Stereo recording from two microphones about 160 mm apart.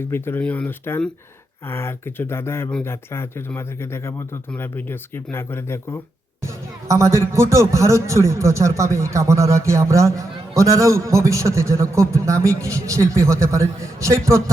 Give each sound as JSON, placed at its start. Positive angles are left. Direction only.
{"t": 0.0, "sound": "speech", "side_deg": 15}
{"t": 6.4, "sound": "speech", "side_deg": -20}